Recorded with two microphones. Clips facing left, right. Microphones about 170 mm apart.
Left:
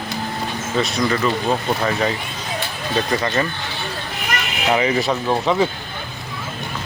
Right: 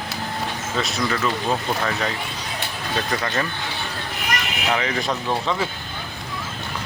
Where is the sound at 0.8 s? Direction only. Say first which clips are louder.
Left 4 dB; centre (ahead or behind).